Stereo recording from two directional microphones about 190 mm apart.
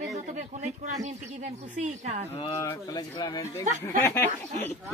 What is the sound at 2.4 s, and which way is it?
Speech, 15° left (ahead or behind).